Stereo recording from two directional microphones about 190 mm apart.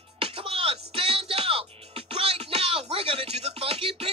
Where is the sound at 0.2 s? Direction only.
30° right (ahead or behind).